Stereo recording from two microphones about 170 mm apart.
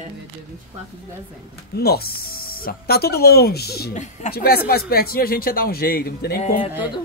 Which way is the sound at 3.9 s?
45° left (ahead or behind).